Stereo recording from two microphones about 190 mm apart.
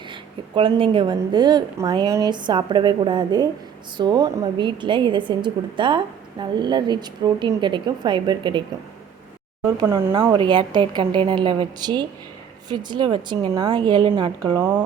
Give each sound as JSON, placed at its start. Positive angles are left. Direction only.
{"t": 0.1, "sound": "a woman's voice", "side_deg": -30}
{"t": 9.9, "sound": "a woman's voice", "side_deg": -25}
{"t": 14.6, "sound": "speech", "side_deg": -10}